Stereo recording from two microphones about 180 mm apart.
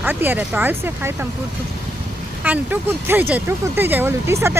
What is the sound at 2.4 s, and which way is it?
Speech, 10° right (ahead or behind).